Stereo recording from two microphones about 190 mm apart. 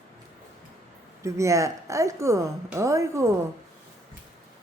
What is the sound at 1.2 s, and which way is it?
A woman's voice, 15° right (ahead or behind).